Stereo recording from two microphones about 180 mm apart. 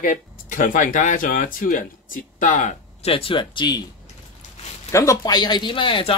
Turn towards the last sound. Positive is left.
turn(degrees=30)  # may be behind; listen again after turning